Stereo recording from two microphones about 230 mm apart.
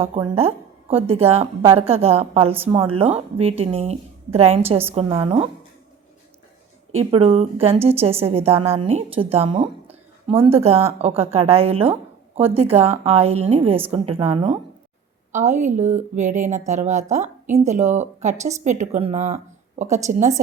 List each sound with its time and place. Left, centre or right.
0.0 s a woman's voice: right
7.0 s a woman's voice: right